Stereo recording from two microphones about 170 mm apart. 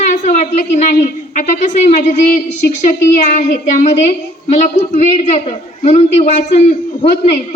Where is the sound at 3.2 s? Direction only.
50° left (ahead or behind).